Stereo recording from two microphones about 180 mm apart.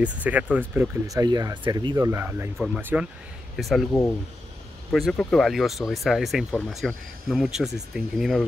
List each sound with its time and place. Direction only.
0.0 s speech: 10° right (ahead or behind)